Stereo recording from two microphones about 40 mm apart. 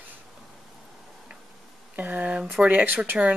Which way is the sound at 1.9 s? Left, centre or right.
Right.